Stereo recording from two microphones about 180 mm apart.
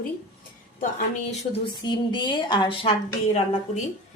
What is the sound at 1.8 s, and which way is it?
A woman's voice, 25° left (ahead or behind).